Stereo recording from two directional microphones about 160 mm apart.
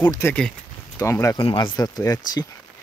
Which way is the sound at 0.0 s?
15° left (ahead or behind).